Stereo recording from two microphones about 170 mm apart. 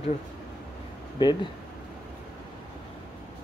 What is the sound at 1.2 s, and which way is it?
Speech, 30° left (ahead or behind).